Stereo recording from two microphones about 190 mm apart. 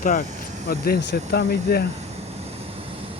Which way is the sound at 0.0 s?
45° left (ahead or behind).